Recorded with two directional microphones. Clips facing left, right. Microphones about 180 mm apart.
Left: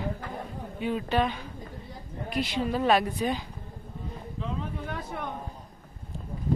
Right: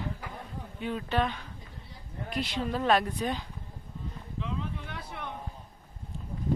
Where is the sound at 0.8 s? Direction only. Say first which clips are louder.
Left 3 dB; 10° left (ahead or behind).